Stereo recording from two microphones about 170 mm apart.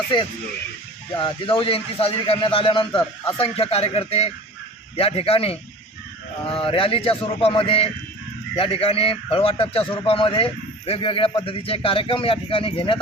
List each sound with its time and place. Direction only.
0.1 s a man's voice: 30° left (ahead or behind)